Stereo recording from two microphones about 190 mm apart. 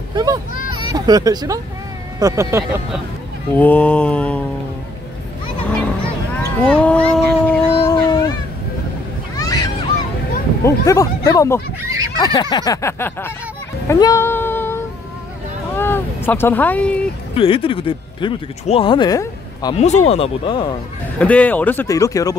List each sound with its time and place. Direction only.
0.1 s a child's voice: 20° right (ahead or behind)
3.5 s speech: 10° left (ahead or behind)
5.6 s a sound: 5° left (ahead or behind)
7.8 s a sound: 20° left (ahead or behind)
9.4 s a sound: 20° left (ahead or behind)
10.6 s speech: 15° left (ahead or behind)
13.8 s female singing: 15° left (ahead or behind)
15.7 s speech: 10° left (ahead or behind)
17.4 s speech: 30° left (ahead or behind)
19.7 s speech: 35° left (ahead or behind)
21.2 s speech: 5° left (ahead or behind)